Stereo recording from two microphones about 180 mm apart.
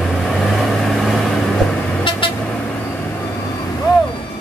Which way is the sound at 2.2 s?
30° left (ahead or behind).